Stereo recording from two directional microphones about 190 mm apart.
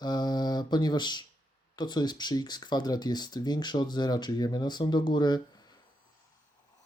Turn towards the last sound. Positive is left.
turn(degrees=20)  # may be behind; listen again after turning